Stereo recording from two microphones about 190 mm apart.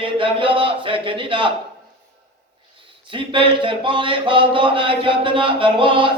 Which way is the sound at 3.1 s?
25° right (ahead or behind).